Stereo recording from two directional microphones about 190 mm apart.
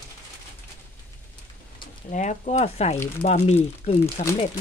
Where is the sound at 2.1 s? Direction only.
40° left (ahead or behind).